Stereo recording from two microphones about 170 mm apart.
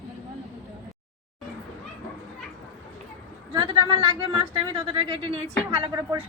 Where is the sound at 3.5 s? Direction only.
25° right (ahead or behind).